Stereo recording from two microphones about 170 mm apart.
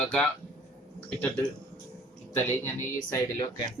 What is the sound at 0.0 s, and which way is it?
Speech, 5° left (ahead or behind).